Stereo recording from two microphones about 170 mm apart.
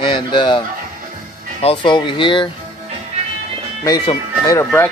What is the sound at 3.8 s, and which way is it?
Speech, 20° left (ahead or behind).